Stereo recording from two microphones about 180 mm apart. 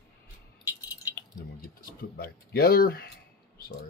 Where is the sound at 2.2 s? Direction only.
60° left (ahead or behind).